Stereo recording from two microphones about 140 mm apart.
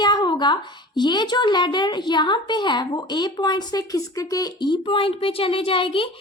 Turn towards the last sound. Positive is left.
turn(degrees=40)  # may be behind; listen again after turning